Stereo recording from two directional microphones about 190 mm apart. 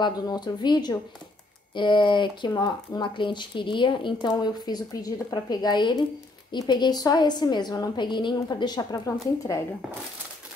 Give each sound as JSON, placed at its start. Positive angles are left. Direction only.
{"t": 0.0, "sound": "speech", "side_deg": 25}